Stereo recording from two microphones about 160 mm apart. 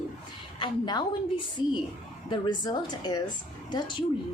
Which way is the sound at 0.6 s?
25° left (ahead or behind).